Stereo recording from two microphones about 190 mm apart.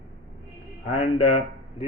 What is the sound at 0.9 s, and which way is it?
Speech, 30° left (ahead or behind).